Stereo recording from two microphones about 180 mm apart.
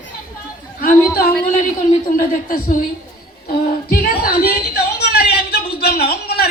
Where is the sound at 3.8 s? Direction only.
55° left (ahead or behind).